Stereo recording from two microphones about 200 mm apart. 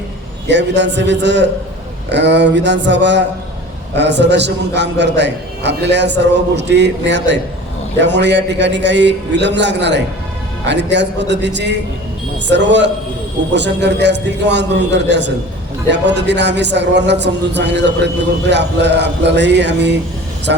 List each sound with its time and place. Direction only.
0.4 s speech: 60° right (ahead or behind)